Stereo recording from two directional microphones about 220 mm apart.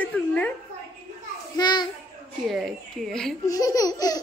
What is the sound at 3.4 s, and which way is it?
Child singing, 15° left (ahead or behind).